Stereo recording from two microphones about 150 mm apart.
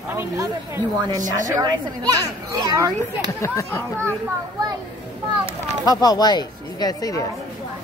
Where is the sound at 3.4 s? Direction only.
20° left (ahead or behind).